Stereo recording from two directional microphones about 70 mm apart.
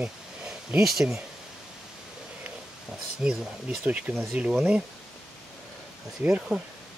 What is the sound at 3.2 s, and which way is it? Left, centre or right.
Speech, centre.